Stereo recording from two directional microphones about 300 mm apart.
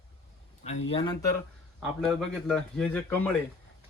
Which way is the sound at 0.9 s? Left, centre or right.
Centre.